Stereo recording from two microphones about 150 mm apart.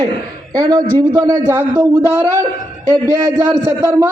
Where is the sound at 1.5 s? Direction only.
15° right (ahead or behind).